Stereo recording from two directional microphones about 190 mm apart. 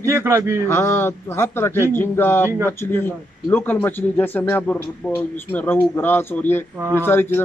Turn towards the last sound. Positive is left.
turn(degrees=10)  # may be behind; listen again after turning